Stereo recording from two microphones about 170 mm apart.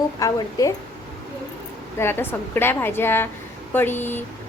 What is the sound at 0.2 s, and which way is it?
Speech, 20° left (ahead or behind).